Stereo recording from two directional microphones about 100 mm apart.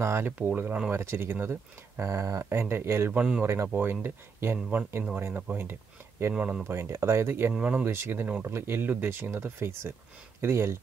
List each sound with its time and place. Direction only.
0.0 s speech: 25° right (ahead or behind)
0.4 s speech: 15° right (ahead or behind)
6.3 s speech: 10° right (ahead or behind)
6.6 s speech: 25° right (ahead or behind)